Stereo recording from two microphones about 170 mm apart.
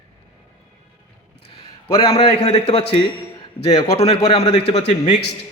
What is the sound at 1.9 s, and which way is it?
Speech, 30° left (ahead or behind).